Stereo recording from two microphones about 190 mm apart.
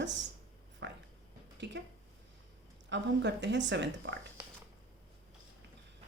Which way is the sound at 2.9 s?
65° right (ahead or behind).